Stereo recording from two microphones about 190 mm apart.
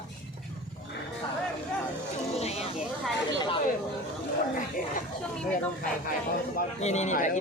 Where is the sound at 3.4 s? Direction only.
25° left (ahead or behind).